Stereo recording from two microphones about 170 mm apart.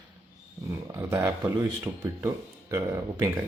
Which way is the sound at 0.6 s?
15° right (ahead or behind).